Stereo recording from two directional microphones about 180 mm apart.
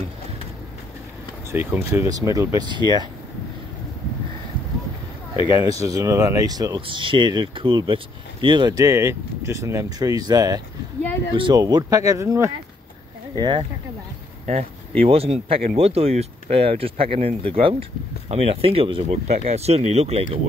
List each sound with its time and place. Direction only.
1.5 s speech: 10° right (ahead or behind)
5.9 s speech: 20° right (ahead or behind)
13.4 s speech: 25° right (ahead or behind)